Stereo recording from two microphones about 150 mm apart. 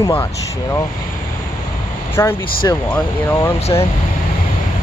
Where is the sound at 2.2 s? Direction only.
15° left (ahead or behind).